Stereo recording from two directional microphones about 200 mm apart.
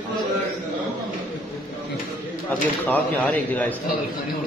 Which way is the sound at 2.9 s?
10° left (ahead or behind).